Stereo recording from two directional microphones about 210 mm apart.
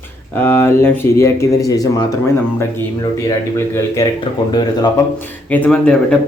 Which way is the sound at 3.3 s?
15° left (ahead or behind).